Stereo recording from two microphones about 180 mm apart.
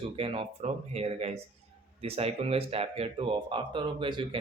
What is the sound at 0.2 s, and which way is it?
Speech, 30° right (ahead or behind).